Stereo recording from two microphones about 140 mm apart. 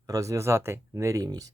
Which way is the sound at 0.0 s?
20° right (ahead or behind).